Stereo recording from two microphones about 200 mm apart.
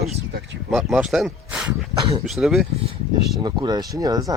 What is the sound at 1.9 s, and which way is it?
Speech, 20° right (ahead or behind).